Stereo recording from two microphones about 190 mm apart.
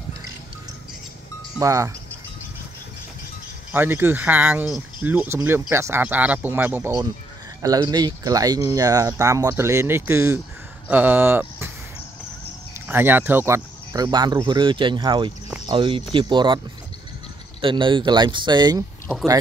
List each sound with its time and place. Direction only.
1.6 s speech: 15° right (ahead or behind)
3.7 s speech: 10° right (ahead or behind)
12.8 s speech: 10° right (ahead or behind)